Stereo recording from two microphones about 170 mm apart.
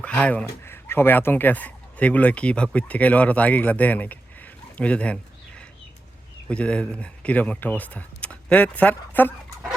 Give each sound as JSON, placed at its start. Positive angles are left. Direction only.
{"t": 0.0, "sound": "speech", "side_deg": 5}